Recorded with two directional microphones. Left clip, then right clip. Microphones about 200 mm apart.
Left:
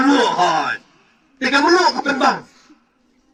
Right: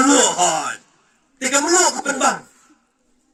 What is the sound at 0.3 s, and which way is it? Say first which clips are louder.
A man's voice: left 3 dB; 20° right (ahead or behind).